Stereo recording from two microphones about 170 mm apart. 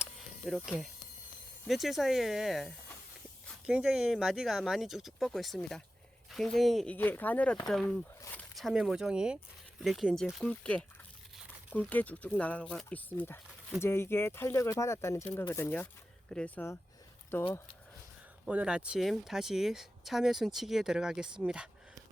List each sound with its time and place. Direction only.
0.0 s a sound: centre (ahead or behind)
1.6 s speech: centre (ahead or behind)
18.4 s speech: 5° right (ahead or behind)